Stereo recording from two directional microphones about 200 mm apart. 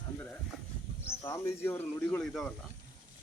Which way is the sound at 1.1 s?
15° left (ahead or behind).